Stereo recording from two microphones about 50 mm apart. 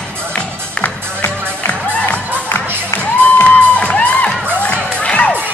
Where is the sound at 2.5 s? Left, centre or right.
Left.